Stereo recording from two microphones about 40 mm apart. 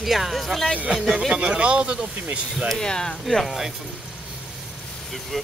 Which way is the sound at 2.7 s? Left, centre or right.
Centre.